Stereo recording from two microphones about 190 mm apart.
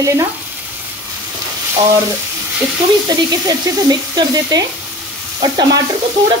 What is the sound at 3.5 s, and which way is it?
Speech, 20° right (ahead or behind).